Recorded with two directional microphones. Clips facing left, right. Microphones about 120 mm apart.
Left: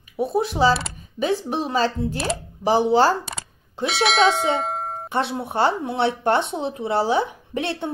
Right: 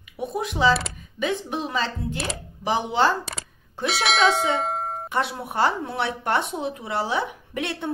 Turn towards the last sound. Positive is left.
turn(degrees=30)  # may be behind; listen again after turning